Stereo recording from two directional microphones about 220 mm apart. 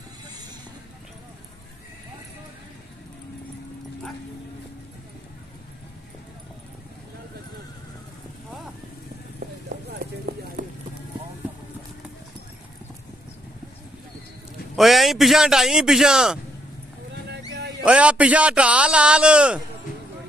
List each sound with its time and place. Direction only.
9.9 s clip-clop: 45° right (ahead or behind)
14.8 s a man's voice: centre (ahead or behind)
17.1 s a sound: 50° right (ahead or behind)
17.8 s a man's voice: 5° right (ahead or behind)